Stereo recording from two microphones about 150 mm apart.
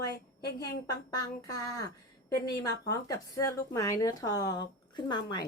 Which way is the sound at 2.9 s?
25° left (ahead or behind).